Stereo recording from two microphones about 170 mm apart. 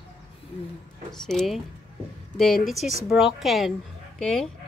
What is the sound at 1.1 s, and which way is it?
Speech, centre (ahead or behind).